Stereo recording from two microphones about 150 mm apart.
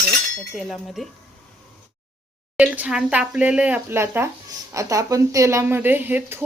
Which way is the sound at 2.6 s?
5° right (ahead or behind).